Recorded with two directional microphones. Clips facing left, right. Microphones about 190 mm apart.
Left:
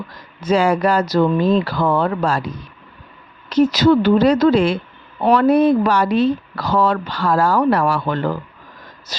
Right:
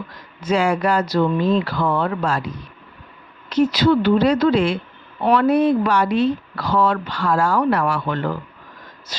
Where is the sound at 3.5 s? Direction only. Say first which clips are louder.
Left 3 dB; 40° left (ahead or behind).